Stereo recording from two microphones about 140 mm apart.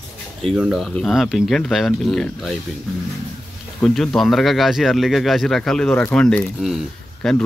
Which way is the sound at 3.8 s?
Centre (ahead or behind).